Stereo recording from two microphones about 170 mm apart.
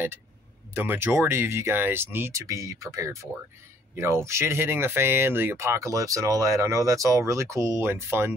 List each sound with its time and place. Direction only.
0.7 s speech: 15° right (ahead or behind)